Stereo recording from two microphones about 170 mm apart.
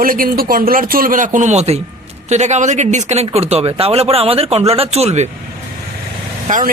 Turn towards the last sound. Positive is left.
turn(degrees=-50)  # may be behind; listen again after turning